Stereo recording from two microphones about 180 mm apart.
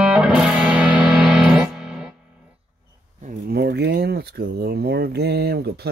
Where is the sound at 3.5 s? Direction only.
65° right (ahead or behind).